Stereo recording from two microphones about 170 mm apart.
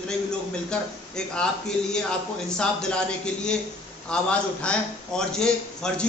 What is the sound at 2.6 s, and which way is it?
Speech, 5° left (ahead or behind).